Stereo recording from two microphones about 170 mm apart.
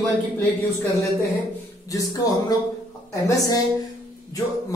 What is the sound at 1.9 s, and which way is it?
Speech, 20° left (ahead or behind).